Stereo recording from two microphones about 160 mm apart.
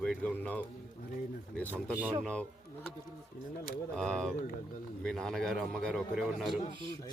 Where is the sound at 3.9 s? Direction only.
5° left (ahead or behind).